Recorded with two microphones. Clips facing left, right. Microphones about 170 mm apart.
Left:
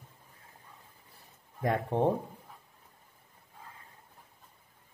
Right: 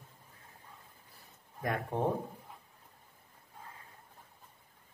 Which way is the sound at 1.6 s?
30° left (ahead or behind).